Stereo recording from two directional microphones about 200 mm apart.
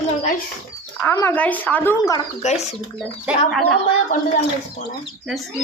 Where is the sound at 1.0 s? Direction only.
10° left (ahead or behind).